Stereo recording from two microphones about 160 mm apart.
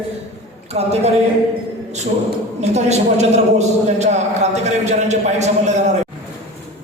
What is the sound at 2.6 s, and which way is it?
A woman's voice, 45° right (ahead or behind).